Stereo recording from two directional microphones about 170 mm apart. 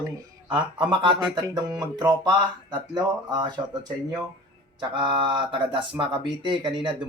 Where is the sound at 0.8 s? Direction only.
30° right (ahead or behind).